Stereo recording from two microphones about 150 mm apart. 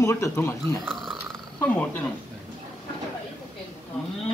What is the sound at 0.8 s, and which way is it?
Speech, centre (ahead or behind).